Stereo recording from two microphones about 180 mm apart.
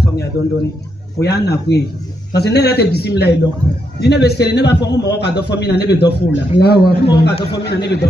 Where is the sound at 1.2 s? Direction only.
65° left (ahead or behind).